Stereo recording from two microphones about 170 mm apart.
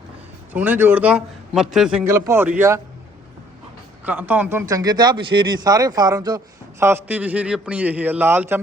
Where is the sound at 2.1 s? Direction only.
15° right (ahead or behind).